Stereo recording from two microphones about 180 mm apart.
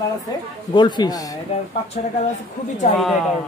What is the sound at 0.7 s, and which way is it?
Speech, 25° left (ahead or behind).